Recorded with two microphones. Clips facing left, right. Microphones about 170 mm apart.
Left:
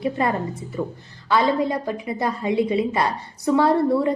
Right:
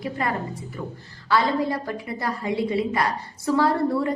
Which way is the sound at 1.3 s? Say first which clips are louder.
Left 2 dB; 20° left (ahead or behind).